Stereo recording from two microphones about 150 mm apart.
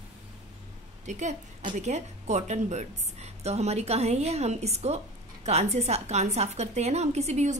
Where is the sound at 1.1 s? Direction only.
50° right (ahead or behind).